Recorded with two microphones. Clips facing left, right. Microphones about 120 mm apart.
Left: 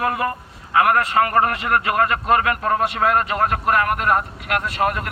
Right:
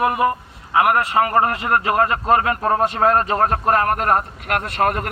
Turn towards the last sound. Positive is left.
turn(degrees=-45)  # may be behind; listen again after turning